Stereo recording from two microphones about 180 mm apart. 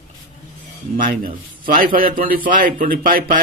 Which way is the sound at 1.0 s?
50° right (ahead or behind).